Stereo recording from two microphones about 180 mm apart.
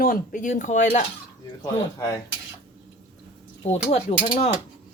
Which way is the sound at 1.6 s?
15° left (ahead or behind).